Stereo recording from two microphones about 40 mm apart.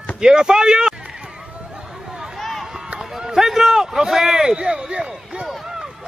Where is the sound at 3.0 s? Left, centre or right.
Centre.